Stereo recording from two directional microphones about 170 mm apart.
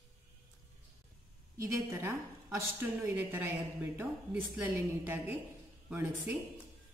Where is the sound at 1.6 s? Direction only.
15° right (ahead or behind).